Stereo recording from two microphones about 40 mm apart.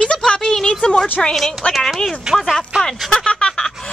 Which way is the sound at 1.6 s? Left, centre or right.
Left.